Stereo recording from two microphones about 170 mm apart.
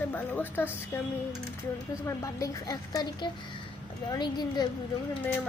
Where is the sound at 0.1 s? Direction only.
10° left (ahead or behind).